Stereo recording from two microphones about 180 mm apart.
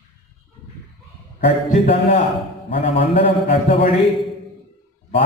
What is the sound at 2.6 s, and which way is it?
A man's voice, 30° left (ahead or behind).